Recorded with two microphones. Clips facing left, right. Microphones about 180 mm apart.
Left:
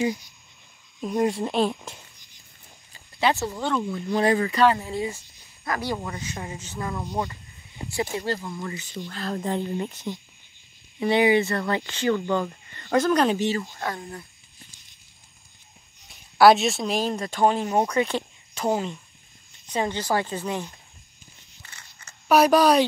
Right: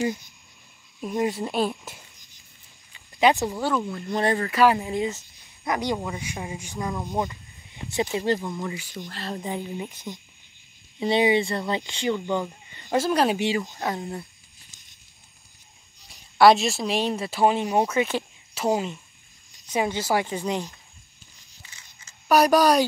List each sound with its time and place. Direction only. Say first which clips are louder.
1.0 s speech: left 2 dB; 5° right (ahead or behind)
3.2 s speech: right 3 dB; 15° right (ahead or behind)
11.0 s speech: left 1 dB; 20° right (ahead or behind)
16.1 s speech: even; centre (ahead or behind); by 20.7 s 15° right (ahead or behind)
21.6 s a sound: left 4 dB; 60° left (ahead or behind)
22.3 s speech: left 1 dB; centre (ahead or behind)